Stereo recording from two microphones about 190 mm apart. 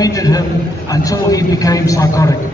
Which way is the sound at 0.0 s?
20° left (ahead or behind).